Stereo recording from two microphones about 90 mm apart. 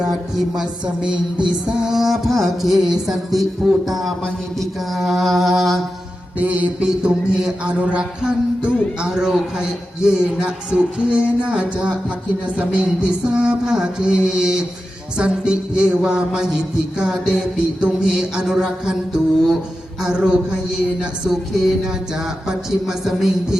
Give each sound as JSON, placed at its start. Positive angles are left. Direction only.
{"t": 1.7, "sound": "music", "side_deg": -5}
{"t": 6.4, "sound": "speech", "side_deg": -15}
{"t": 21.0, "sound": "music", "side_deg": -5}